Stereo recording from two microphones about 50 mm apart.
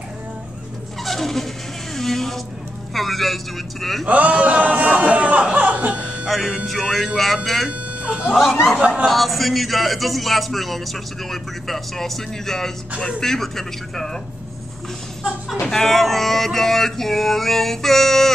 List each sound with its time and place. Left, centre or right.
1.0 s a sound: centre
2.9 s a man's voice: centre
4.0 s speech: right
6.2 s a man's voice: centre
8.0 s speech: right
8.3 s speech: centre
8.7 s speech: right
9.0 s a man's voice: centre
15.7 s a man's voice: centre